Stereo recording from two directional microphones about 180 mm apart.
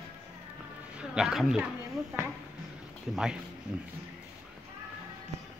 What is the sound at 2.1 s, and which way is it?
Speech, 15° right (ahead or behind).